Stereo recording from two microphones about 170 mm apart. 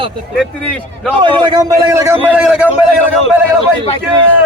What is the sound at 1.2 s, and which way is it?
A man's voice, 25° right (ahead or behind).